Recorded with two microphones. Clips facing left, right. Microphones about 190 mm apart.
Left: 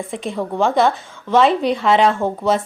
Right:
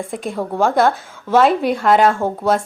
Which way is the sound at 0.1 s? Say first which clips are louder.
Even; centre (ahead or behind).